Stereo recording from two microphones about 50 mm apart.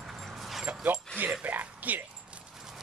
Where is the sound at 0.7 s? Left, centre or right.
Right.